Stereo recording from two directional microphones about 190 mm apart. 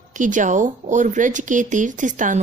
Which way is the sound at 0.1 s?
40° right (ahead or behind).